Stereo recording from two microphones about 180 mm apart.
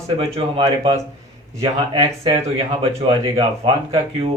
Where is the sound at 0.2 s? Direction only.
35° right (ahead or behind).